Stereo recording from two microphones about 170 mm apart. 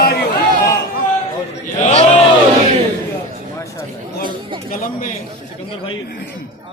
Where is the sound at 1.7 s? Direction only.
40° left (ahead or behind).